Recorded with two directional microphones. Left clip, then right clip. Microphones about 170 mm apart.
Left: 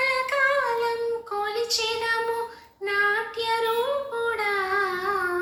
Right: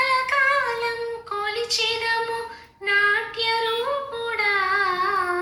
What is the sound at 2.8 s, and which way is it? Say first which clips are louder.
Child singing: right 4 dB; 35° left (ahead or behind).